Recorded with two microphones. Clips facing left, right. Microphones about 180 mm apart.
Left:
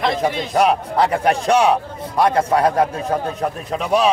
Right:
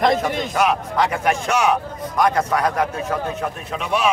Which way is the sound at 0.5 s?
35° left (ahead or behind).